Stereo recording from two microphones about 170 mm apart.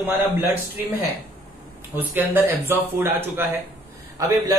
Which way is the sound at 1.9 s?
10° right (ahead or behind).